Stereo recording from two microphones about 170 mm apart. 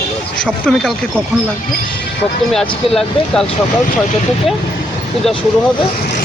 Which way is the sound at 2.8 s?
35° left (ahead or behind).